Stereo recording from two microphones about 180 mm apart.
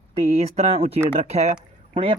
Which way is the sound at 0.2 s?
35° right (ahead or behind).